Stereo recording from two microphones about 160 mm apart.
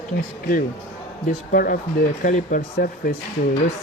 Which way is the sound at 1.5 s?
65° left (ahead or behind).